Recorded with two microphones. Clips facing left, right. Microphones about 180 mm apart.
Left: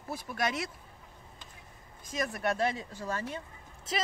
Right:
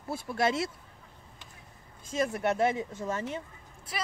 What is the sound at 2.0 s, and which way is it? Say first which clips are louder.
Speech: right 4 dB; 25° right (ahead or behind).